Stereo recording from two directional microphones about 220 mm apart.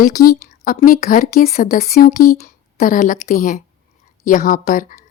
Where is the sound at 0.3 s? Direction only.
40° left (ahead or behind).